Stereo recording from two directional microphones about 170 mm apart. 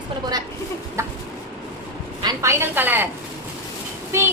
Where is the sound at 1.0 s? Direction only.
15° right (ahead or behind).